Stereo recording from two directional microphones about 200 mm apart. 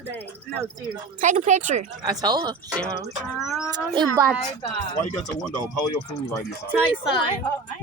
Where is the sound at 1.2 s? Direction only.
40° right (ahead or behind).